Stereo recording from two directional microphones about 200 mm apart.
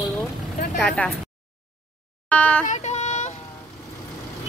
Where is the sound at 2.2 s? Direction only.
5° left (ahead or behind).